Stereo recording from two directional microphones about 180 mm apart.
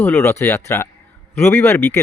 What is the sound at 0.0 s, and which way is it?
Speech, 10° left (ahead or behind).